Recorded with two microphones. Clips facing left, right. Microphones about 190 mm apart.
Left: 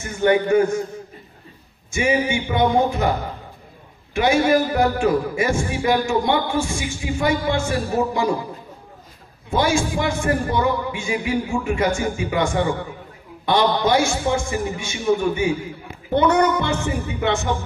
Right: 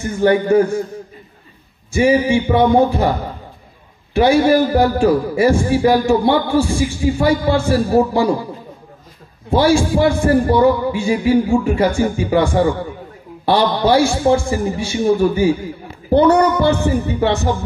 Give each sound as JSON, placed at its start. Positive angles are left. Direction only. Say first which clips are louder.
{"t": 0.0, "sound": "a man's voice", "louder": "right 3 dB", "side_deg": -35}
{"t": 1.9, "sound": "a man's voice", "louder": "right 7 dB", "side_deg": -35}
{"t": 4.1, "sound": "a man's voice", "louder": "right 5 dB", "side_deg": -35}
{"t": 9.5, "sound": "a man's voice", "louder": "right 6 dB", "side_deg": -35}